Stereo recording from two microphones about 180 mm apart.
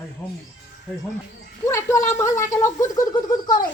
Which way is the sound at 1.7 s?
15° left (ahead or behind).